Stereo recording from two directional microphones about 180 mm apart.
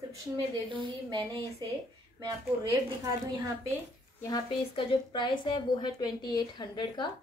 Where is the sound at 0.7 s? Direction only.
25° right (ahead or behind).